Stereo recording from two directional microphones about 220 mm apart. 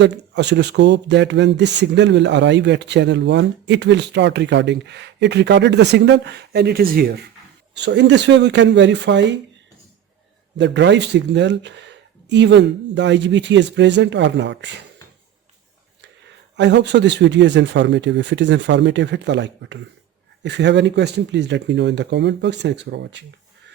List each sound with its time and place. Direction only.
0.0 s speech: 50° right (ahead or behind)
10.6 s speech: 55° right (ahead or behind)
16.6 s speech: 50° right (ahead or behind)